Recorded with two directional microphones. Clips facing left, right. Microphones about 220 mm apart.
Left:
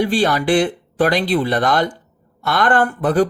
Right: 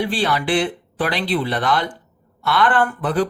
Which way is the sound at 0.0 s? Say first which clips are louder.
Left 4 dB; 45° left (ahead or behind).